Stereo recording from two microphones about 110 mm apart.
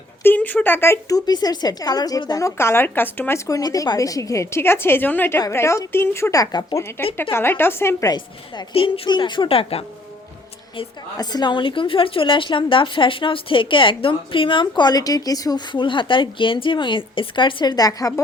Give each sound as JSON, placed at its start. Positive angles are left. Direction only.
{"t": 0.2, "sound": "a woman's voice", "side_deg": 15}
{"t": 2.6, "sound": "a woman's voice", "side_deg": 20}
{"t": 7.2, "sound": "a woman's voice", "side_deg": 20}
{"t": 8.0, "sound": "a woman's voice", "side_deg": 40}
{"t": 11.2, "sound": "a woman's voice", "side_deg": 40}